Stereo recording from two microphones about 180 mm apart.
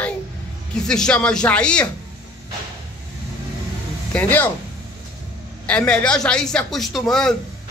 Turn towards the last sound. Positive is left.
turn(degrees=0)  # may be behind; listen again after turning